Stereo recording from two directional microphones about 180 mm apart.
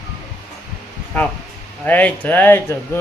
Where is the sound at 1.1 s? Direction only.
5° left (ahead or behind).